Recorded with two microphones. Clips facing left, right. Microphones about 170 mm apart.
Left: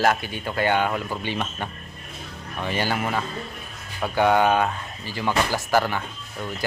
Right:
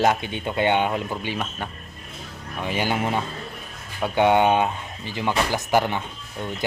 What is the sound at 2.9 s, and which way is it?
Speech, 25° right (ahead or behind).